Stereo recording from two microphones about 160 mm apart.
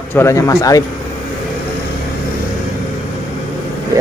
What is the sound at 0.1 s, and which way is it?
Speech, 15° left (ahead or behind).